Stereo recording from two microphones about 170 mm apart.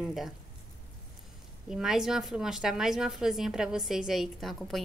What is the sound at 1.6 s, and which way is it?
A woman's voice, 5° right (ahead or behind).